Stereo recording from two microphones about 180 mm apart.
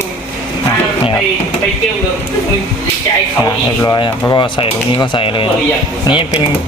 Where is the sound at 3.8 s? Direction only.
20° left (ahead or behind).